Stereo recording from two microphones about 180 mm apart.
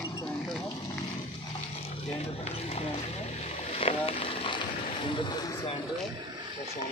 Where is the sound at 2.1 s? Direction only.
35° left (ahead or behind).